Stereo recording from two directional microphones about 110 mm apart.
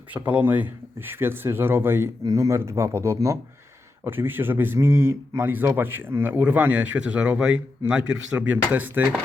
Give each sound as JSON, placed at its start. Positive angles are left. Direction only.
{"t": 0.1, "sound": "speech", "side_deg": -15}